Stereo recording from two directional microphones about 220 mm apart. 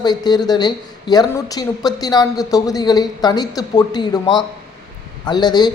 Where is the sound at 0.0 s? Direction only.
20° left (ahead or behind).